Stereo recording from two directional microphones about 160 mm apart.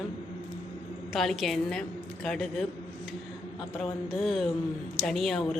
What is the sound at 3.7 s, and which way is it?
Speech, centre (ahead or behind).